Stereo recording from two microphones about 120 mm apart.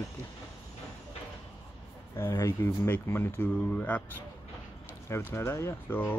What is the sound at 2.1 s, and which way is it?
Speech, 20° left (ahead or behind).